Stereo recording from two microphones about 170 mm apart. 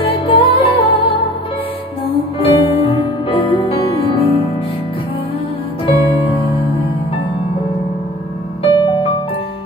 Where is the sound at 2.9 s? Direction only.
30° left (ahead or behind).